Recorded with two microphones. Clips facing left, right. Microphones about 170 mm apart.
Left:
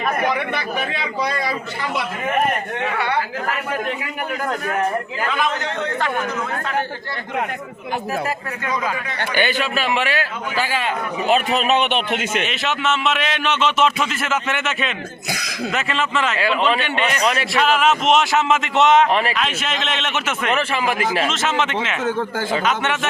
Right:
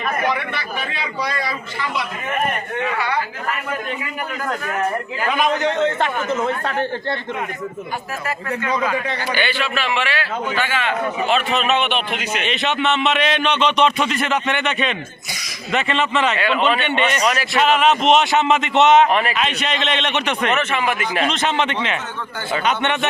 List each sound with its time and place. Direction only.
5.3 s speech: 15° right (ahead or behind)
9.3 s a man's voice: 45° left (ahead or behind)
12.5 s speech: centre (ahead or behind)